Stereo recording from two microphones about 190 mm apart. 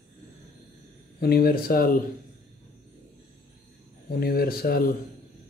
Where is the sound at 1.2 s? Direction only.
55° left (ahead or behind).